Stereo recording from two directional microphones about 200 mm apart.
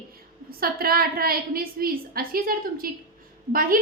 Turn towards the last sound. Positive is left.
turn(degrees=-45)  # may be behind; listen again after turning